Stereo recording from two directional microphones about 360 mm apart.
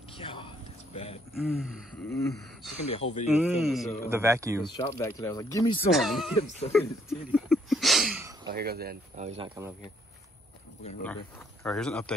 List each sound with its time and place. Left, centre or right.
0.2 s a sound: centre
1.3 s speech: centre
3.3 s speech: centre
4.7 s speech: centre
6.7 s a sound: centre
8.5 s speech: right
10.8 s speech: centre
11.6 s speech: centre